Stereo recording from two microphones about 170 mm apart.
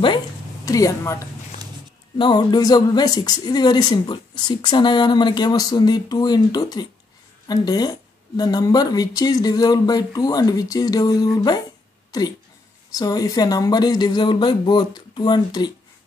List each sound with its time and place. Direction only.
0.7 s a woman's voice: 20° left (ahead or behind)